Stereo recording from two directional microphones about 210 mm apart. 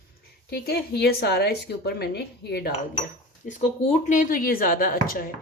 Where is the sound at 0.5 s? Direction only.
50° left (ahead or behind).